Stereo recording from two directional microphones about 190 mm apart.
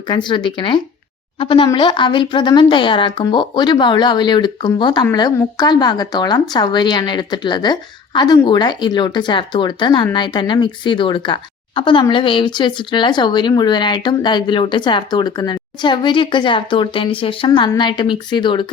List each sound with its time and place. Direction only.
0.1 s speech: 25° left (ahead or behind)